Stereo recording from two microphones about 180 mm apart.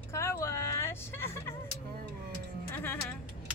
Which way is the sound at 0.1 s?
15° left (ahead or behind).